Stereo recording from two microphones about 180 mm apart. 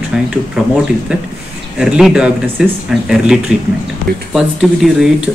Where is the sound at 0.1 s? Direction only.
5° right (ahead or behind).